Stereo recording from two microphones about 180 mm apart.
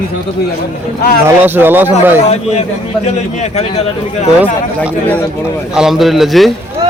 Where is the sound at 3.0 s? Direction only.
40° left (ahead or behind).